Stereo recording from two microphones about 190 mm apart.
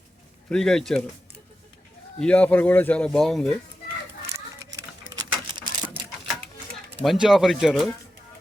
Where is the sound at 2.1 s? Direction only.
5° left (ahead or behind).